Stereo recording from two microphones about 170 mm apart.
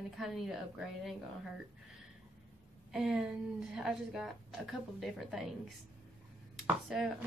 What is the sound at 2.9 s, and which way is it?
Speech, 5° right (ahead or behind).